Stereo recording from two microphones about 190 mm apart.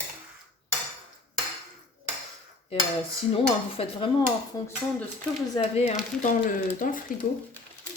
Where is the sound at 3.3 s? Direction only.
30° left (ahead or behind).